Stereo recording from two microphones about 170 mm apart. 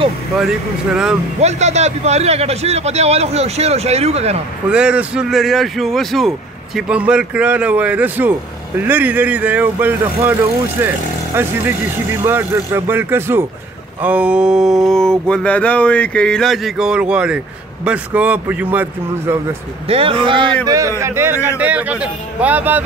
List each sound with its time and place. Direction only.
1.4 s a man's voice: 40° right (ahead or behind)
4.6 s speech: 5° right (ahead or behind)
14.0 s a sound: 10° right (ahead or behind)
17.8 s speech: 10° right (ahead or behind)
19.9 s a man's voice: 30° right (ahead or behind); by 22.8 s 10° right (ahead or behind)